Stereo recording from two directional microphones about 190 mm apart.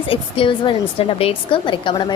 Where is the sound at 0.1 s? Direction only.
25° left (ahead or behind).